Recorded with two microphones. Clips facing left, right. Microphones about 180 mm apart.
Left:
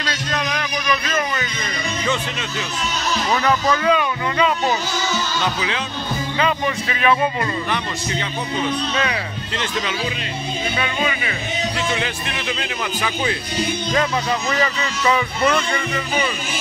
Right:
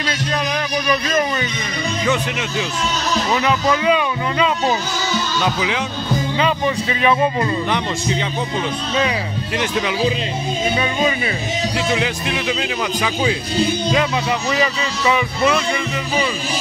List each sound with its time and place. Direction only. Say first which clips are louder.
0.8 s music: right 3 dB; 30° right (ahead or behind)
3.4 s speech: even; 15° right (ahead or behind)
9.6 s speech: right 5 dB; 15° right (ahead or behind)
11.9 s speech: right 4 dB; 15° right (ahead or behind)
14.5 s speech: right 2 dB; 10° right (ahead or behind)